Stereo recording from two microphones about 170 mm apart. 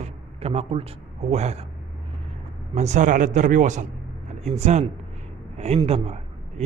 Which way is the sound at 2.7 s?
40° right (ahead or behind).